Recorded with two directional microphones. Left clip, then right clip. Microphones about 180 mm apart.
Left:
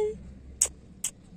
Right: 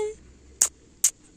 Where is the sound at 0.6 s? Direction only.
55° right (ahead or behind).